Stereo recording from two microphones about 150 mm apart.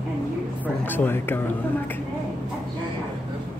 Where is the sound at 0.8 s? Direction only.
15° left (ahead or behind).